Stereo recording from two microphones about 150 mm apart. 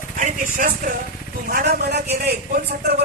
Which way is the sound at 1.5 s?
80° right.